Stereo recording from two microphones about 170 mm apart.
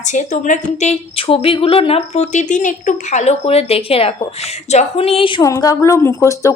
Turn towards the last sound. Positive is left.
turn(degrees=15)  # may be behind; listen again after turning